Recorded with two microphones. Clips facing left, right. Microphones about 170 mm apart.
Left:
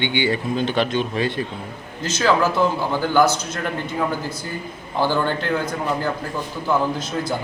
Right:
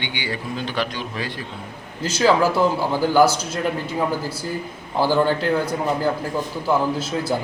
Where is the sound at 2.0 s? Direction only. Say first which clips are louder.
Right 2 dB; 10° right (ahead or behind).